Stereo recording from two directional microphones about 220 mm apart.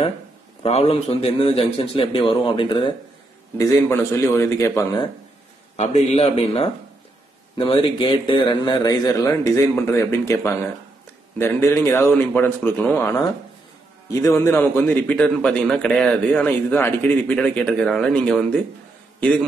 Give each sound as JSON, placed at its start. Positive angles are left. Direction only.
{"t": 0.6, "sound": "a man's voice", "side_deg": 30}
{"t": 3.5, "sound": "a man's voice", "side_deg": 10}
{"t": 5.8, "sound": "a man's voice", "side_deg": 30}